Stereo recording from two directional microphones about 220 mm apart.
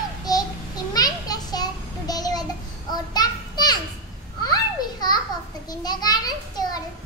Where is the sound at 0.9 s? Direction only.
15° left (ahead or behind).